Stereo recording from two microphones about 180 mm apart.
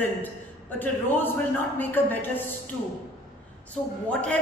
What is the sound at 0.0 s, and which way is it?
A man's voice, 10° left (ahead or behind).